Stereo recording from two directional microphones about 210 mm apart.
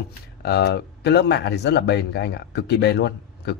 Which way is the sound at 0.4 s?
50° left (ahead or behind).